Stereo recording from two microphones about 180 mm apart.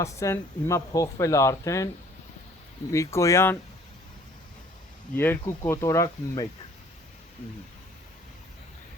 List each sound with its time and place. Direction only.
0.0 s speech: 15° left (ahead or behind)
2.9 s speech: 15° left (ahead or behind)
5.1 s speech: 10° left (ahead or behind)